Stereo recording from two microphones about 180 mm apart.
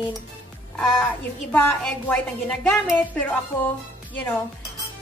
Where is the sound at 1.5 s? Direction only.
5° left (ahead or behind).